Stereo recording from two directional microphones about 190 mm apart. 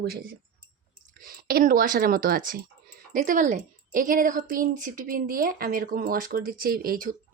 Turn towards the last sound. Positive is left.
turn(degrees=-45)  # may be behind; listen again after turning